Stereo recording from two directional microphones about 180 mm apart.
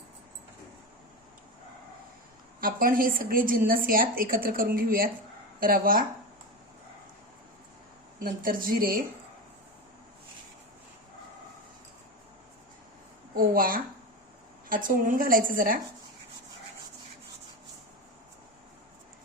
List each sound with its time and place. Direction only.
2.6 s a woman's voice: 50° right (ahead or behind)
8.2 s a woman's voice: 50° right (ahead or behind)
13.3 s a woman's voice: 50° right (ahead or behind)